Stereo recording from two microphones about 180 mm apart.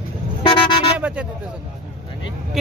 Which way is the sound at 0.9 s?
5° right (ahead or behind).